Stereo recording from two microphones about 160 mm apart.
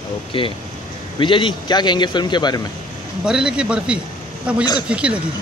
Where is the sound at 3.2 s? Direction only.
5° right (ahead or behind).